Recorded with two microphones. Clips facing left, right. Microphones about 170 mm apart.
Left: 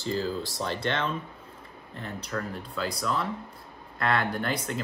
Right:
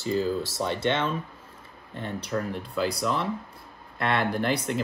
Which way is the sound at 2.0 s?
25° right (ahead or behind).